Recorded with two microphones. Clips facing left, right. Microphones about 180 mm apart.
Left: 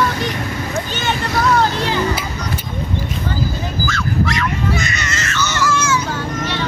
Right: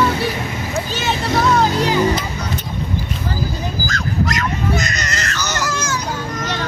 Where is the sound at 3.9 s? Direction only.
40° right (ahead or behind).